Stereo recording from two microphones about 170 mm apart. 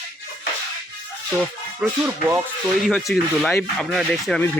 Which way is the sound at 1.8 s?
10° right (ahead or behind).